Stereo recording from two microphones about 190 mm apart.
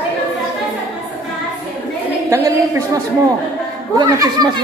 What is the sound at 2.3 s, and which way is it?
Speech, 15° right (ahead or behind).